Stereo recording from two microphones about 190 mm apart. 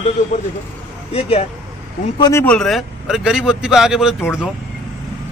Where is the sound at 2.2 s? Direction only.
15° left (ahead or behind).